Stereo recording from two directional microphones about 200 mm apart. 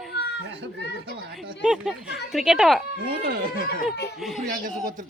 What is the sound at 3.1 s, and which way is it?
Speech, 45° right (ahead or behind).